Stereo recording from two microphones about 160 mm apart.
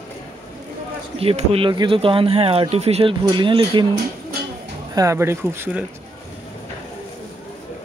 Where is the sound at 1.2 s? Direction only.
35° right (ahead or behind).